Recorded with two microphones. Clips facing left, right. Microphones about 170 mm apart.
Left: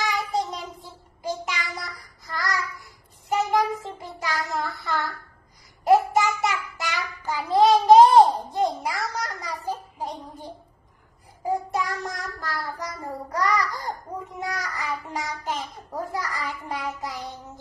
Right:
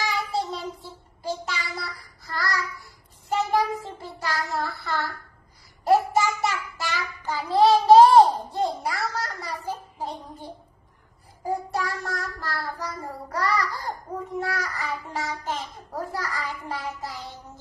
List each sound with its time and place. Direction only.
0.0 s child singing: 20° left (ahead or behind)
5.9 s a sound: 20° left (ahead or behind)
11.4 s child singing: 20° left (ahead or behind)
13.4 s babbling: 20° left (ahead or behind)